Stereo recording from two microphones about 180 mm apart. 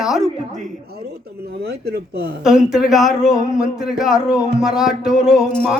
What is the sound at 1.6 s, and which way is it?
Speech, 65° right (ahead or behind).